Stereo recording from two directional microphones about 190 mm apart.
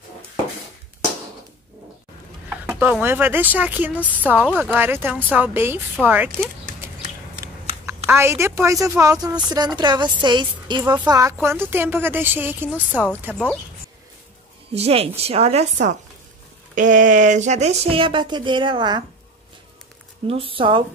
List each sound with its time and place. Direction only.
2.5 s a woman's voice: 10° right (ahead or behind)
8.1 s a woman's voice: 15° right (ahead or behind)
14.7 s a woman's voice: 30° right (ahead or behind)
20.2 s speech: 30° right (ahead or behind)